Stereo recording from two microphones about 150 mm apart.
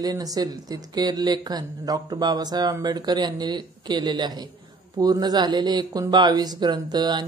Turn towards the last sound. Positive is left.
turn(degrees=-30)  # may be behind; listen again after turning